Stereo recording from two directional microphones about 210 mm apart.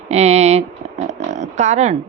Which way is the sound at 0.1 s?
30° right (ahead or behind).